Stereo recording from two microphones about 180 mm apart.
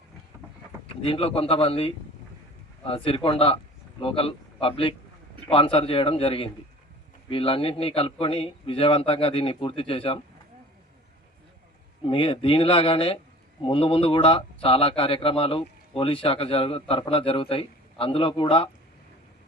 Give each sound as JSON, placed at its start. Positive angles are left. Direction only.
{"t": 1.0, "sound": "speech", "side_deg": 30}
{"t": 12.0, "sound": "speech", "side_deg": 30}